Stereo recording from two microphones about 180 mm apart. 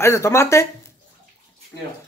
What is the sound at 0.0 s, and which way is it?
Speech, 15° left (ahead or behind).